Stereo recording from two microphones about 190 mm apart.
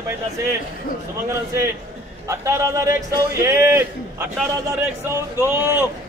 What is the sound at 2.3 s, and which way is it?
Speech, 15° right (ahead or behind).